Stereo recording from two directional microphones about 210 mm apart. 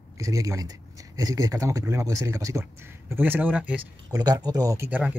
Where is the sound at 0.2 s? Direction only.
15° right (ahead or behind).